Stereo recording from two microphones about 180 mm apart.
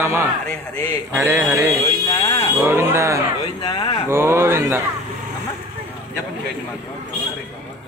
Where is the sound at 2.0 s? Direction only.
20° left (ahead or behind).